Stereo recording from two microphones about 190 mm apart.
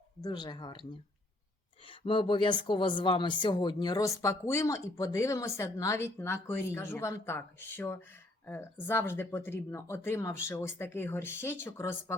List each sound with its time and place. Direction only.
0.2 s speech: 20° left (ahead or behind)
1.9 s speech: 25° left (ahead or behind)